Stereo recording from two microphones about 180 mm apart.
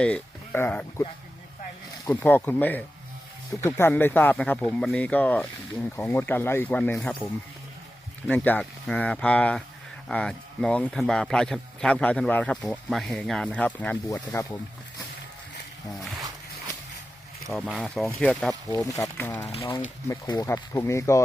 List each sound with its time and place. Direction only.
0.0 s speech: 10° left (ahead or behind)
2.0 s speech: 10° left (ahead or behind)
8.3 s speech: 10° left (ahead or behind)
17.5 s speech: centre (ahead or behind)
18.9 s speech: 20° left (ahead or behind)
19.5 s speech: 35° left (ahead or behind)
20.1 s speech: 20° left (ahead or behind)